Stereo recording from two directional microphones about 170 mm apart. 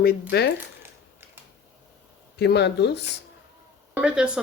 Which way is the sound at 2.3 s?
80° left.